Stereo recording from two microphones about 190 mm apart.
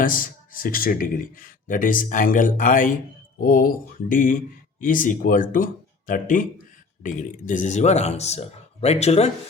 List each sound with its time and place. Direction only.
0.0 s speech: 45° left (ahead or behind)